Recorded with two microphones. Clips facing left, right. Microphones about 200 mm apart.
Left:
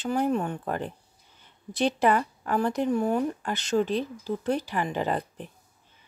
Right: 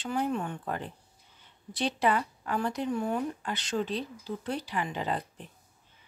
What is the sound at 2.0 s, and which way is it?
Speech, 50° left (ahead or behind).